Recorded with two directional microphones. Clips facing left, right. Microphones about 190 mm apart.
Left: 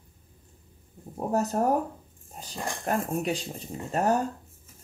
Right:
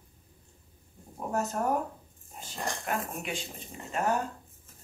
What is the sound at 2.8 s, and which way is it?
Speech, 40° left (ahead or behind).